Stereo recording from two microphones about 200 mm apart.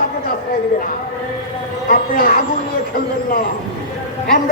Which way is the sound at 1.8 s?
45° left (ahead or behind).